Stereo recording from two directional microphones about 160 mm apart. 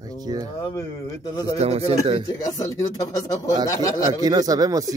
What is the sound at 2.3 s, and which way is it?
Speech, 20° left (ahead or behind).